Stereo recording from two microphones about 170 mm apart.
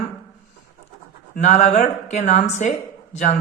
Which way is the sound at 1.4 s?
45° left (ahead or behind).